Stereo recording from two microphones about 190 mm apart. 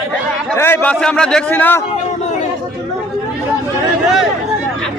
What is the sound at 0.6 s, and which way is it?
A man's voice, 10° left (ahead or behind).